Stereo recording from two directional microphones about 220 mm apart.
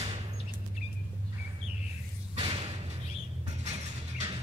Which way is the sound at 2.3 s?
25° right (ahead or behind).